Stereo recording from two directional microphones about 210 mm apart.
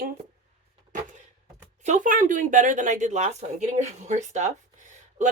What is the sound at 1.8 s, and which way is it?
Speech, 35° right (ahead or behind).